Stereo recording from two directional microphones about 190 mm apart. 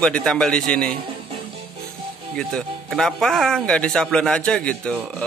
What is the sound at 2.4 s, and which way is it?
Speech, 5° left (ahead or behind).